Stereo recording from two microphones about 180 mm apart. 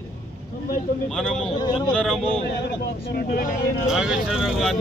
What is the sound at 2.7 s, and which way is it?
Speech, 55° left (ahead or behind).